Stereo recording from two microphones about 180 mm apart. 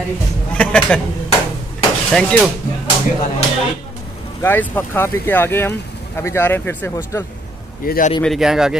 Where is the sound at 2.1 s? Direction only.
5° left (ahead or behind).